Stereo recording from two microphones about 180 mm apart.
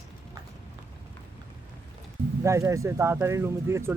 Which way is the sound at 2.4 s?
15° right (ahead or behind).